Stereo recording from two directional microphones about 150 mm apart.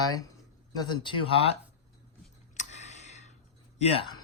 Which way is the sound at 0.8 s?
30° left (ahead or behind).